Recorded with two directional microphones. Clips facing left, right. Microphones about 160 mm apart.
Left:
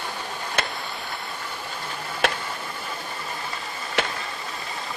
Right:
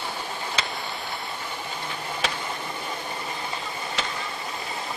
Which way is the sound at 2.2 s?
55° left (ahead or behind).